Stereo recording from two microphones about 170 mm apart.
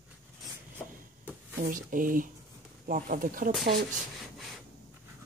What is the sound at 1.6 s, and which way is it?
Speech, 50° right (ahead or behind).